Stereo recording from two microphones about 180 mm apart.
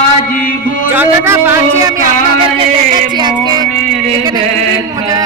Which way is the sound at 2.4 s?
25° right (ahead or behind).